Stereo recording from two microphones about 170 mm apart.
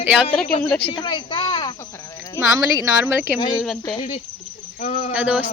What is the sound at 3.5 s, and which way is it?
Speech, centre (ahead or behind).